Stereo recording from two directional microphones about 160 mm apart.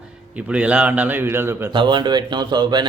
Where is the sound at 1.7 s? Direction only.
30° right (ahead or behind).